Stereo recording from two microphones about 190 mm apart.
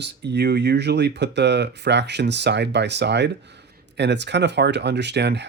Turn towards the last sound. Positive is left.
turn(degrees=-65)  # may be behind; listen again after turning